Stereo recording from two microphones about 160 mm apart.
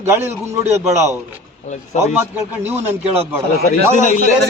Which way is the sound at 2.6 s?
15° right (ahead or behind).